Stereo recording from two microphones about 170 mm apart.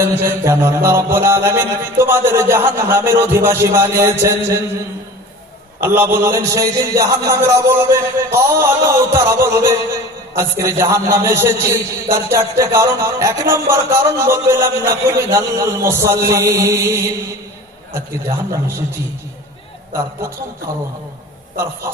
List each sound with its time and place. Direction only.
0.0 s a man's voice: 15° right (ahead or behind)
5.8 s a man's voice: 15° right (ahead or behind)